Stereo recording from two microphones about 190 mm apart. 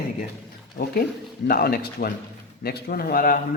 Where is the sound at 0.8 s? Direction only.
55° left (ahead or behind).